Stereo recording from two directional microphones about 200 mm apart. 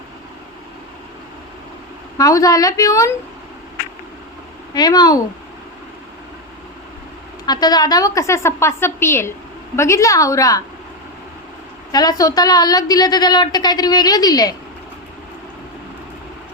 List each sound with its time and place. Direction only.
2.1 s a woman's voice: 15° left (ahead or behind)
4.7 s a woman's voice: 20° left (ahead or behind)
7.4 s a woman's voice: 20° left (ahead or behind)
11.9 s a woman's voice: 20° left (ahead or behind)